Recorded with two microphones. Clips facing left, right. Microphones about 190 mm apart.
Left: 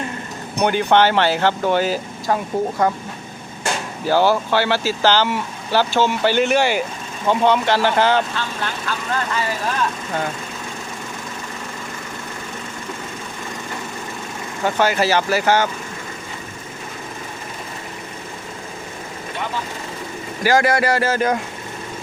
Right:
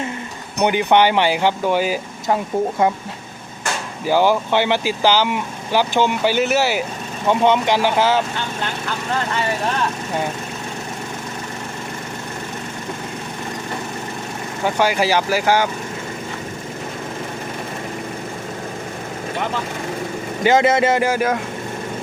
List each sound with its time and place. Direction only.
0.6 s speech: 15° right (ahead or behind)
2.2 s speech: 20° right (ahead or behind)
4.0 s speech: 15° right (ahead or behind)
7.3 s speech: 15° right (ahead or behind)
14.6 s speech: 10° right (ahead or behind)
20.4 s speech: 20° right (ahead or behind)